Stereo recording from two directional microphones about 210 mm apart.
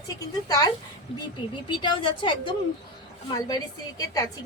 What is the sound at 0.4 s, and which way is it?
A woman's voice, 20° left (ahead or behind).